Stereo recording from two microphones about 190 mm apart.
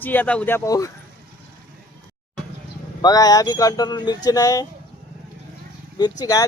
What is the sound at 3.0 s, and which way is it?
A man's voice, 20° left (ahead or behind).